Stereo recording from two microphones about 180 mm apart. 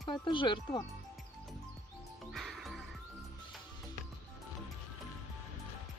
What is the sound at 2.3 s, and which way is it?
Music, centre (ahead or behind).